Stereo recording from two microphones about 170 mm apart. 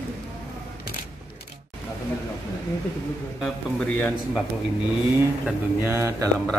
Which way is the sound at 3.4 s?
Centre (ahead or behind).